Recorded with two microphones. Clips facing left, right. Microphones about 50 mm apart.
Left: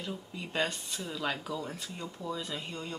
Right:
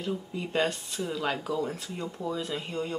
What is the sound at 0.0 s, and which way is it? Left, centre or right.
Speech, centre.